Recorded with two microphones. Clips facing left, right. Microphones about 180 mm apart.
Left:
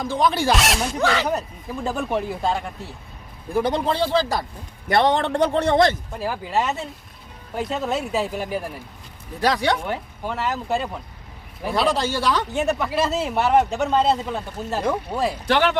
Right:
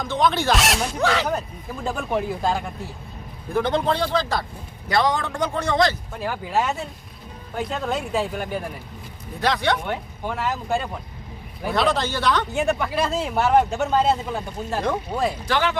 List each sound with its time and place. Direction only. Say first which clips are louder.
0.0 s a man's voice: left 1 dB; 10° left (ahead or behind)
3.9 s a man's voice: left 2 dB; 30° left (ahead or behind)
5.1 s speech: left 5 dB; 65° left (ahead or behind)
5.7 s a man's voice: left 1 dB; 25° left (ahead or behind)
6.1 s speech: even; 5° left (ahead or behind)